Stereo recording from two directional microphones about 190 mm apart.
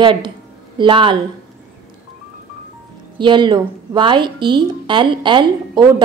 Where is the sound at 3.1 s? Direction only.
25° right (ahead or behind).